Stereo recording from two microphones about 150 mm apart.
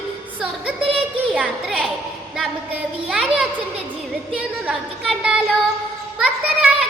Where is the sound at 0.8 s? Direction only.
40° right (ahead or behind).